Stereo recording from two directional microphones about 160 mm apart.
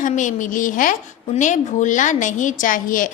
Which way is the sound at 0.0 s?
50° left (ahead or behind).